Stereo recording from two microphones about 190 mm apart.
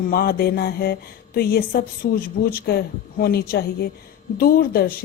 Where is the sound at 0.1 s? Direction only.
55° left (ahead or behind).